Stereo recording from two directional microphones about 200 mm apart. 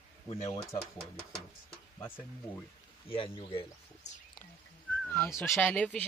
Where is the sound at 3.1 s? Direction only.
25° left (ahead or behind).